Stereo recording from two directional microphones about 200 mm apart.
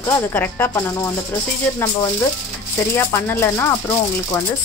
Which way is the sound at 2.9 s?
15° left (ahead or behind).